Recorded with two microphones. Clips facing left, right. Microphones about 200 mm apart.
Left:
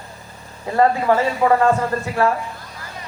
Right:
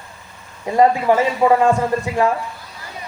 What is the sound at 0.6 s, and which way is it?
A man's voice, 15° right (ahead or behind).